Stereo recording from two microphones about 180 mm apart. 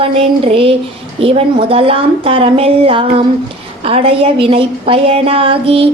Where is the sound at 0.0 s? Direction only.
30° right (ahead or behind).